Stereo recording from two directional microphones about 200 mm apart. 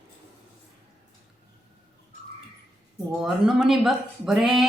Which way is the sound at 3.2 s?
Centre (ahead or behind).